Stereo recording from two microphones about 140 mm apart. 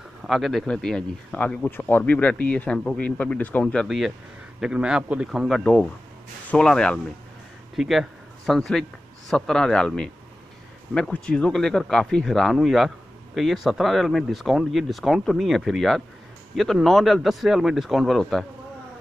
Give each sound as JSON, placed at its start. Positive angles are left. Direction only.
{"t": 0.3, "sound": "speech", "side_deg": 0}
{"t": 5.6, "sound": "speech", "side_deg": 10}